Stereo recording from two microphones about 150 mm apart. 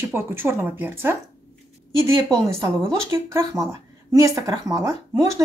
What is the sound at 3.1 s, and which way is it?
Speech, 20° right (ahead or behind).